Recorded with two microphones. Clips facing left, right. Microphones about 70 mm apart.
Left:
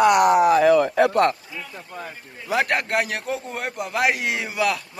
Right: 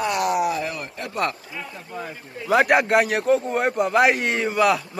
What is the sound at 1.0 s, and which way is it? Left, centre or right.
Speech, left.